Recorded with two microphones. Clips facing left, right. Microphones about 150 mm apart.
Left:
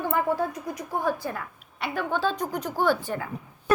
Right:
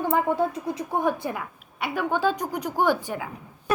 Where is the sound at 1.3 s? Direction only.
10° right (ahead or behind).